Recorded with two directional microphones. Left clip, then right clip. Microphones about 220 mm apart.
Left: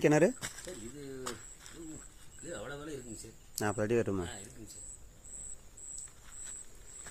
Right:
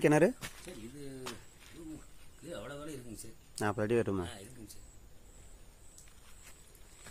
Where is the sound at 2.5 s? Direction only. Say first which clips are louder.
Left 1 dB; 50° right (ahead or behind).